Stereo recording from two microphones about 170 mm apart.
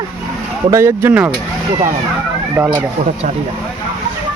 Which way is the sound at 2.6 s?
15° right (ahead or behind).